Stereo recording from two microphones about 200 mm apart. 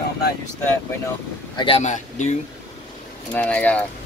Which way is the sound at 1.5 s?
25° left (ahead or behind).